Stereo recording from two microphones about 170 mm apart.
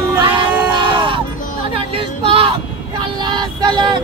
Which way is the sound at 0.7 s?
25° right (ahead or behind).